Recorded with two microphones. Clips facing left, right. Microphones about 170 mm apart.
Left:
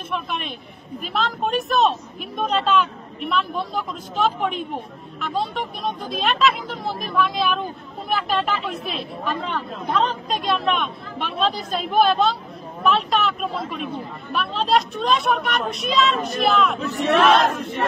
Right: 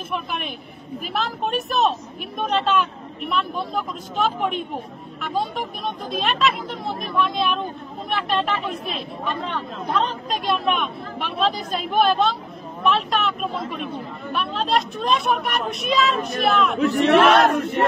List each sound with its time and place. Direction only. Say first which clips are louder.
0.1 s speech: left 1 dB; centre (ahead or behind)
16.9 s battle cry: right 2 dB; 70° right (ahead or behind)